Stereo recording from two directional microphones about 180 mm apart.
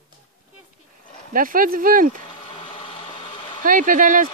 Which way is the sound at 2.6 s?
35° left (ahead or behind).